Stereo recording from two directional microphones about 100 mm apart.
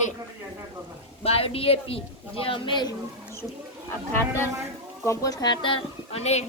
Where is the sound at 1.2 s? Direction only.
75° left (ahead or behind); by 2.9 s 50° left (ahead or behind).